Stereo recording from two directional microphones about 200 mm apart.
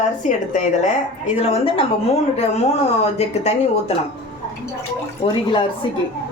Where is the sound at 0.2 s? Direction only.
40° left (ahead or behind).